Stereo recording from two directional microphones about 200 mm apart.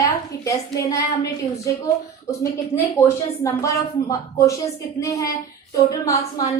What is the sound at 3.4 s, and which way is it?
A woman's voice, 15° left (ahead or behind).